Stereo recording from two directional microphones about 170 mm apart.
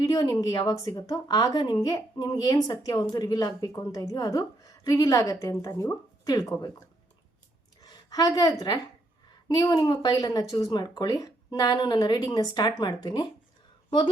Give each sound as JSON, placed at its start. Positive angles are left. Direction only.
{"t": 0.0, "sound": "a woman's voice", "side_deg": 20}